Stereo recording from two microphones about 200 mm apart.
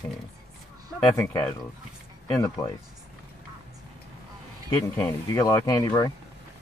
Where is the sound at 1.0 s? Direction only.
10° left (ahead or behind).